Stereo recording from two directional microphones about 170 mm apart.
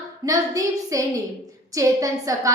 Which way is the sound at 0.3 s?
20° right (ahead or behind).